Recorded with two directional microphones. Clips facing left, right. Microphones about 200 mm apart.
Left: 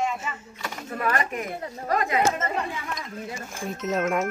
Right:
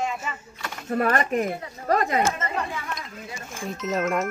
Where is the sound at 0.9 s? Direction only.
40° right (ahead or behind).